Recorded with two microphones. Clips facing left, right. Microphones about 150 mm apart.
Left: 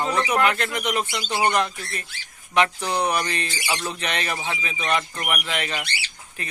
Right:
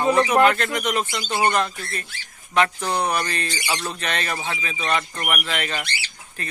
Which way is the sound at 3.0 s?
15° left (ahead or behind).